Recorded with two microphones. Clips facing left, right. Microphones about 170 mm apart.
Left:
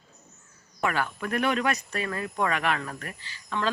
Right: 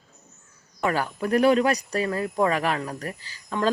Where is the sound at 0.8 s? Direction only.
35° right (ahead or behind).